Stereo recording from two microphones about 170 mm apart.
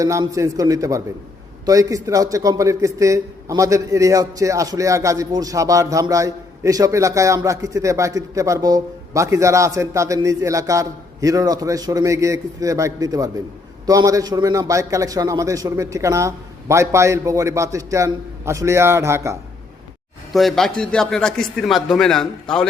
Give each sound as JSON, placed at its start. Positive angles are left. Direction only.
{"t": 0.0, "sound": "a man's voice", "side_deg": -20}
{"t": 20.3, "sound": "a man's voice", "side_deg": 0}